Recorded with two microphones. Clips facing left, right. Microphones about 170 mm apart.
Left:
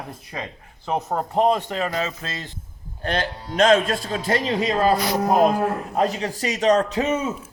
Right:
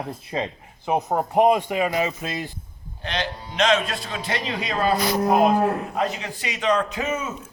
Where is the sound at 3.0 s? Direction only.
50° left (ahead or behind).